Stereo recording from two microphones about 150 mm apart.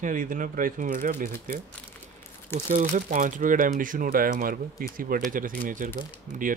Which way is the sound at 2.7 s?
65° right (ahead or behind).